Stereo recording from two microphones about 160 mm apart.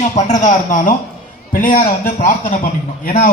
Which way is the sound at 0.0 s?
45° left (ahead or behind).